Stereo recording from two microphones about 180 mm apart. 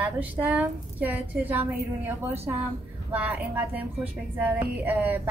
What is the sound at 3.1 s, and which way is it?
A woman's voice, 10° right (ahead or behind).